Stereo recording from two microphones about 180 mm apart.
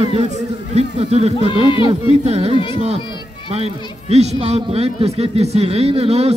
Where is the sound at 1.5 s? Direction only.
30° left (ahead or behind).